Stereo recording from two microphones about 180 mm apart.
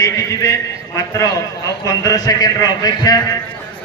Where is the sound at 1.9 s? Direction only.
20° left (ahead or behind).